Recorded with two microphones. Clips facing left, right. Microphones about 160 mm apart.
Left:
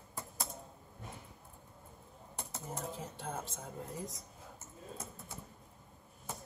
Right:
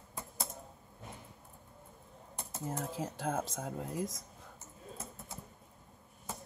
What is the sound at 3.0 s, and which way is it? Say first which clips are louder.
Speech: right 7 dB; 90° right.